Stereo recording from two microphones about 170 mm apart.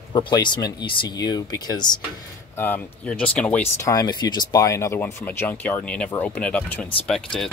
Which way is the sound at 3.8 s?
20° left (ahead or behind).